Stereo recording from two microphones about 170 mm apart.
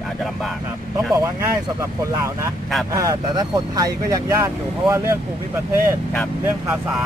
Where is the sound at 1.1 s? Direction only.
20° right (ahead or behind).